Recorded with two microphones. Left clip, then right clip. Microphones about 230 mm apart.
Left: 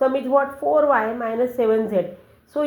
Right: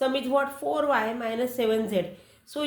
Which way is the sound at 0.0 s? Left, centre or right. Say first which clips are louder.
Left 6 dB; right.